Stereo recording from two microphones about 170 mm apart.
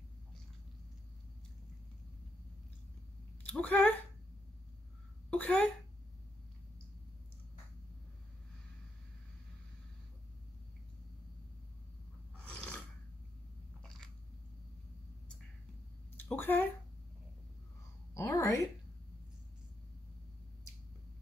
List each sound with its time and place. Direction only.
3.4 s speech: 10° left (ahead or behind)
5.3 s speech: 10° left (ahead or behind)
12.4 s filing: 5° left (ahead or behind)
13.8 s biting: 5° left (ahead or behind)
16.2 s a sound: 10° left (ahead or behind)
18.1 s a sound: 15° left (ahead or behind)